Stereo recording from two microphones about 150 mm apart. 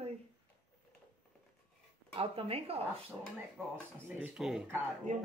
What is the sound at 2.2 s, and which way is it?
Speech, 40° right (ahead or behind).